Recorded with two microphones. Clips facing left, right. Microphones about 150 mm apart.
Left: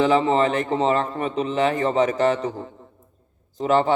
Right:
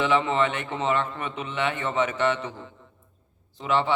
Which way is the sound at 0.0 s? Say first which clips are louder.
Left 5 dB; 35° left (ahead or behind).